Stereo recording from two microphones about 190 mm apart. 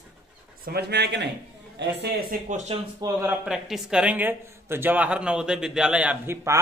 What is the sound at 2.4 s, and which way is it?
Speech, 35° right (ahead or behind).